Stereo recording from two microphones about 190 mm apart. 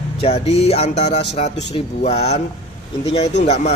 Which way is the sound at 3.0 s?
35° left (ahead or behind).